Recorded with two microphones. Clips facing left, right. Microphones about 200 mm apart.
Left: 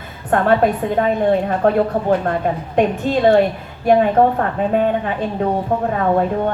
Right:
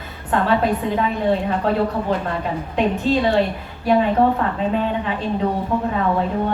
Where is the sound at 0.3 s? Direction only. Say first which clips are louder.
Left 4 dB; 50° left (ahead or behind).